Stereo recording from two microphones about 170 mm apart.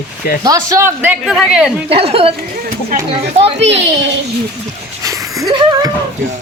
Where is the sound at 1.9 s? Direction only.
35° right (ahead or behind).